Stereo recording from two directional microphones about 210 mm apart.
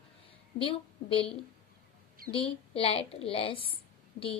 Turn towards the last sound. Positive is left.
turn(degrees=40)  # may be behind; listen again after turning